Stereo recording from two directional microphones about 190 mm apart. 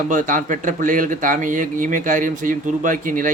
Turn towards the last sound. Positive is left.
turn(degrees=-45)  # may be behind; listen again after turning